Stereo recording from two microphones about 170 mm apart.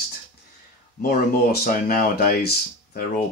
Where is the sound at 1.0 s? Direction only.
65° left (ahead or behind).